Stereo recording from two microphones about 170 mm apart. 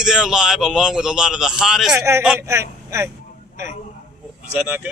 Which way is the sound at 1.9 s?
15° right (ahead or behind).